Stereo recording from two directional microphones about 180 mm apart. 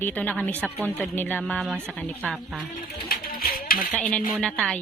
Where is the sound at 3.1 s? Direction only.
55° left (ahead or behind).